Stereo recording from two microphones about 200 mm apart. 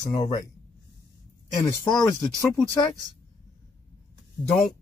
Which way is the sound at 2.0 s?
15° left (ahead or behind).